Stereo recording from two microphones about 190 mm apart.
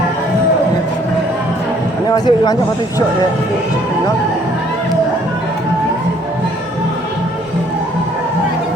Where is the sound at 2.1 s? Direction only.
20° left (ahead or behind).